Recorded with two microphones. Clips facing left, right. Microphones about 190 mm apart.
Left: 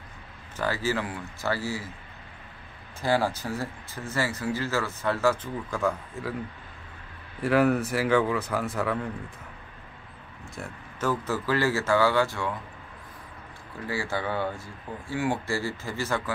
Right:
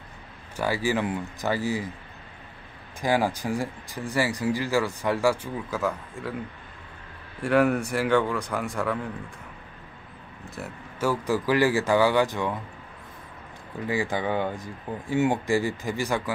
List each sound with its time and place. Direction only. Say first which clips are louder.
0.6 s speech: right 3 dB; 15° right (ahead or behind)
3.0 s speech: right 1 dB; 15° right (ahead or behind)
7.3 s speech: right 1 dB; centre (ahead or behind)
10.5 s speech: right 2 dB; 5° right (ahead or behind)
13.8 s speech: right 3 dB; 15° right (ahead or behind)